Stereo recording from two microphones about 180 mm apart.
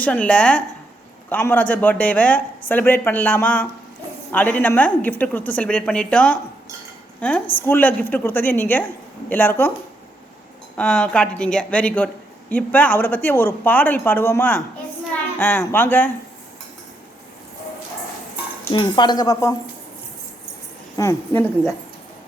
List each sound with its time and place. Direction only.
0.0 s speech: 5° left (ahead or behind)
10.8 s speech: 5° left (ahead or behind)
18.7 s speech: 25° left (ahead or behind)
20.9 s speech: 15° left (ahead or behind)